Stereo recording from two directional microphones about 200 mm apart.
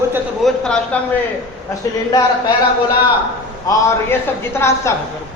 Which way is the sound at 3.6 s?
15° left (ahead or behind).